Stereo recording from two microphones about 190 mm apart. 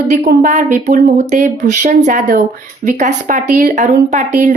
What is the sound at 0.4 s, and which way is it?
A woman's voice, 40° right (ahead or behind).